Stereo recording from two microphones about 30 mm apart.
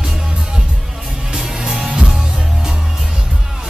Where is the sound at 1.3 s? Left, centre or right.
Centre.